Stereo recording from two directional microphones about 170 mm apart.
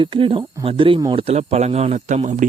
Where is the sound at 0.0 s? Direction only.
30° right (ahead or behind).